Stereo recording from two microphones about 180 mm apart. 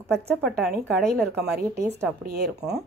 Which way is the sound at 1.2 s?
60° right (ahead or behind).